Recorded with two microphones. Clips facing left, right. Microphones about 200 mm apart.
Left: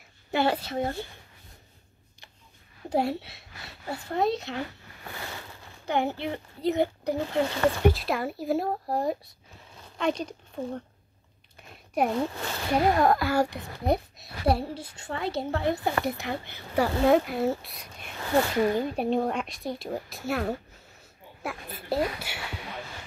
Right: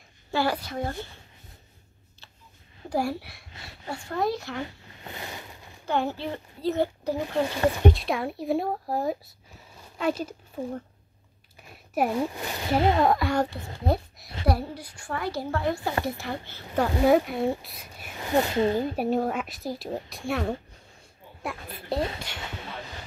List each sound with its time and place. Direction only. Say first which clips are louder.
0.3 s a woman's voice: left 1 dB; 25° left (ahead or behind)
2.9 s a woman's voice: left 1 dB; 25° left (ahead or behind)
4.6 s zipper: even; 20° right (ahead or behind)
5.9 s a woman's voice: even; 15° left (ahead or behind)
7.4 s speech: even; 15° right (ahead or behind)
7.8 s speech: even; centre (ahead or behind); by 13.0 s 25° right (ahead or behind)
13.0 s a woman's voice: even; centre (ahead or behind); by 16.3 s 20° left (ahead or behind)
17.0 s speech: right 1 dB; centre (ahead or behind)
18.1 s speech: even; 20° right (ahead or behind)
18.9 s a woman's voice: right 1 dB; 5° right (ahead or behind)